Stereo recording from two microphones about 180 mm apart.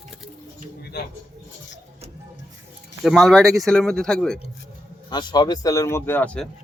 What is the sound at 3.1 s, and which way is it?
Speech, centre (ahead or behind).